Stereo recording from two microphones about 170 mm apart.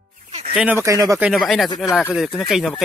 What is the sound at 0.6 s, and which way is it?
Speech, 15° right (ahead or behind).